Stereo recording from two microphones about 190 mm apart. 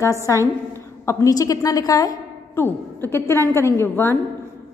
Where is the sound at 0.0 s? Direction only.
15° left (ahead or behind).